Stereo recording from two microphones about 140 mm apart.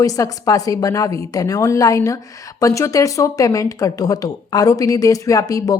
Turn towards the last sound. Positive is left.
turn(degrees=25)  # may be behind; listen again after turning